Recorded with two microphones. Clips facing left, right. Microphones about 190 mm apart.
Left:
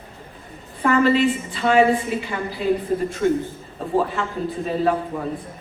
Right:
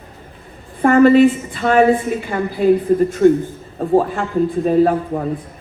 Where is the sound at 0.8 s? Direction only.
50° right (ahead or behind).